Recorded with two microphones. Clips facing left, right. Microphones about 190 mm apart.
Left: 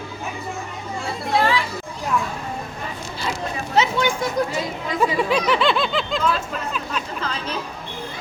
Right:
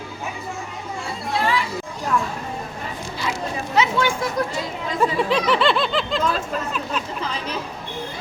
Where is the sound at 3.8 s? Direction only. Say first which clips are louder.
Even; 20° left (ahead or behind).